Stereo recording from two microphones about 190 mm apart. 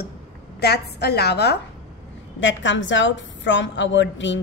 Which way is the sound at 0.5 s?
60° left (ahead or behind).